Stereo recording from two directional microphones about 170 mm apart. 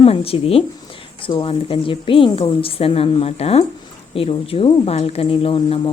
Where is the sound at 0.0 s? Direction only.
35° left (ahead or behind).